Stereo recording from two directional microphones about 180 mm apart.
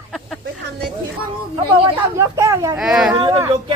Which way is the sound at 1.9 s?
15° right (ahead or behind).